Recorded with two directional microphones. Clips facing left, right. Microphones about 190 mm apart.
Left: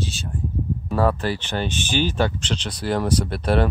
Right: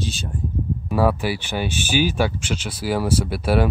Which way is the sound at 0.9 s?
10° right (ahead or behind).